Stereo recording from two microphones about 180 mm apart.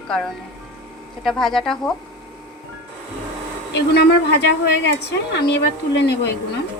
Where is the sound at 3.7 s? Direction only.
70° left (ahead or behind).